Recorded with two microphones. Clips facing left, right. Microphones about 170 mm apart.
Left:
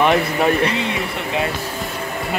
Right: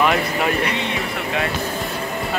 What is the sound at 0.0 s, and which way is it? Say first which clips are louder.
Speech: left 3 dB; 30° left (ahead or behind).